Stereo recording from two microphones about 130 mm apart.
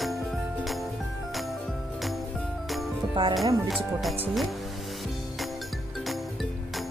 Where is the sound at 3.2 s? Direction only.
40° right (ahead or behind).